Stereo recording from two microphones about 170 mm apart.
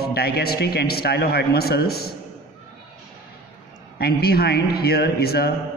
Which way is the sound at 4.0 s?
65° left (ahead or behind).